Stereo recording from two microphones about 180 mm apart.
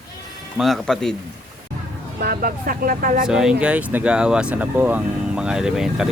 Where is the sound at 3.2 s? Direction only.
5° right (ahead or behind).